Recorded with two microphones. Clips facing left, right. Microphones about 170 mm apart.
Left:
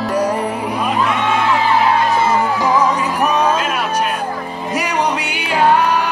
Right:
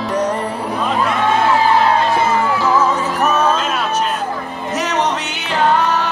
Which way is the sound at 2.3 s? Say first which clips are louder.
Even; 15° left (ahead or behind).